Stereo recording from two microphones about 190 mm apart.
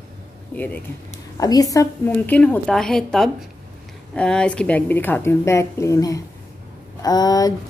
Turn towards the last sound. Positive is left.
turn(degrees=20)  # may be behind; listen again after turning